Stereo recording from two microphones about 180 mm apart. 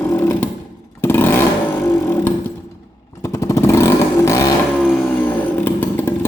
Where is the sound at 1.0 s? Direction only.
10° left (ahead or behind).